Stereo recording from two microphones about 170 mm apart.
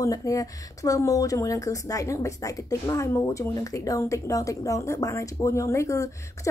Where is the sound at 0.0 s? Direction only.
20° left (ahead or behind).